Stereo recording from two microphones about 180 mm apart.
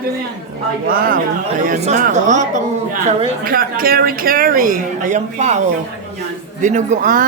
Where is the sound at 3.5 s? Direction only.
55° right (ahead or behind).